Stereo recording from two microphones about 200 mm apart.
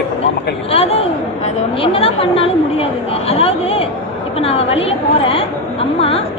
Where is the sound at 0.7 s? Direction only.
30° left (ahead or behind).